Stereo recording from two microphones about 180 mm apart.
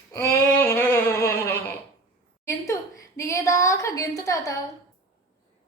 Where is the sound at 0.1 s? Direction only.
15° left (ahead or behind).